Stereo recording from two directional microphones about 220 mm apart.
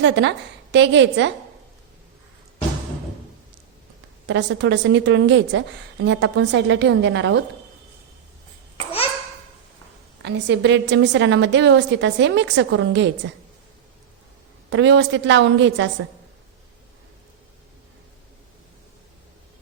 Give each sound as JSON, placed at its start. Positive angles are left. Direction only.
{"t": 0.0, "sound": "a woman's voice", "side_deg": -55}
{"t": 4.3, "sound": "a woman's voice", "side_deg": -55}
{"t": 10.2, "sound": "a woman's voice", "side_deg": -50}
{"t": 14.7, "sound": "a woman's voice", "side_deg": -55}